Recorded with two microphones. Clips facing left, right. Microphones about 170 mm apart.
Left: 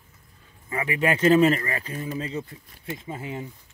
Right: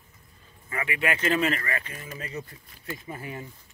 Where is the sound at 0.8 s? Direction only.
35° left (ahead or behind); by 3.5 s 20° left (ahead or behind).